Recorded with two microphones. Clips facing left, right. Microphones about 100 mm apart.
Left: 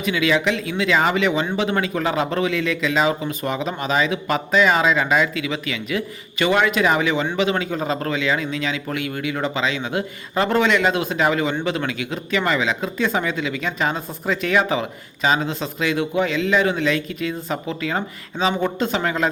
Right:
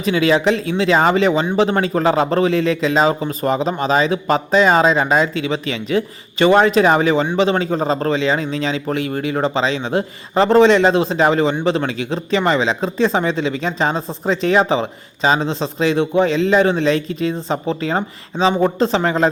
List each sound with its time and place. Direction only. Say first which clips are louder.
0.0 s speech: right 5 dB; 35° right (ahead or behind)